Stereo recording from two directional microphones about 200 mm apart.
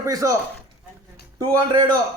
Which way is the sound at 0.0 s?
15° right (ahead or behind).